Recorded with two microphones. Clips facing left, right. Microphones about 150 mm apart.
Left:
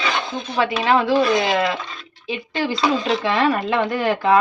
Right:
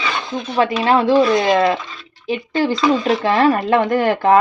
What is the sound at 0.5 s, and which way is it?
Speech, 35° right (ahead or behind).